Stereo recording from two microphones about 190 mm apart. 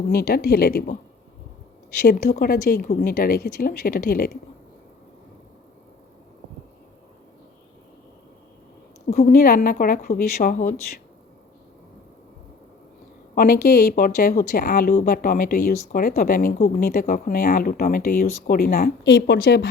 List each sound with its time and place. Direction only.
0.1 s speech: 50° left (ahead or behind)
2.0 s speech: 55° left (ahead or behind)
9.0 s a woman's voice: 35° left (ahead or behind)
9.3 s speech: 45° left (ahead or behind)
13.3 s speech: 50° left (ahead or behind)